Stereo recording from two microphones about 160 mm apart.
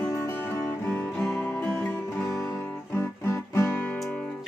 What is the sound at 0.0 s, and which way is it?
Music, 15° left (ahead or behind).